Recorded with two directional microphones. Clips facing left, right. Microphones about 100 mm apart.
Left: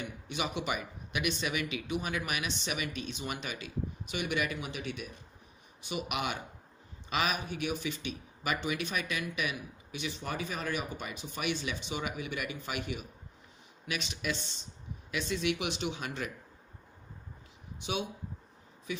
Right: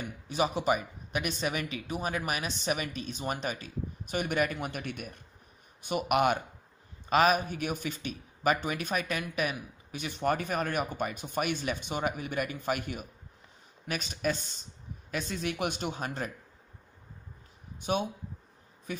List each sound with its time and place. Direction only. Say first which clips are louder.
0.0 s speech: right 6 dB; 40° right (ahead or behind)
17.7 s speech: right 5 dB; 45° right (ahead or behind)